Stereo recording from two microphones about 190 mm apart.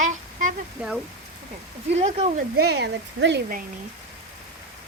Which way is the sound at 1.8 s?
35° right (ahead or behind).